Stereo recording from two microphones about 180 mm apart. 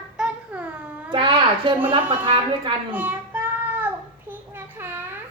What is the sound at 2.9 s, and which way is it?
Child singing, 10° right (ahead or behind).